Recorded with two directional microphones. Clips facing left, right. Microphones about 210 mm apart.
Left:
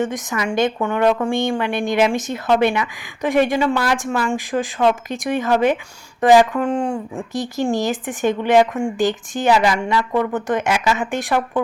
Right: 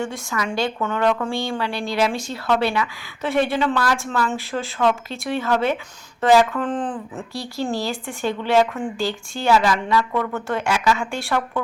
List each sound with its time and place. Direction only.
0.0 s a woman's voice: 20° left (ahead or behind)